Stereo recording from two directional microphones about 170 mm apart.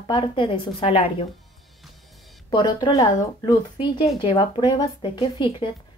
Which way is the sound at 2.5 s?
25° left (ahead or behind).